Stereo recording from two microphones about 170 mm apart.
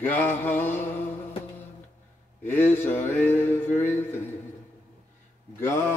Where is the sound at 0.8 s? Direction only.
40° left (ahead or behind).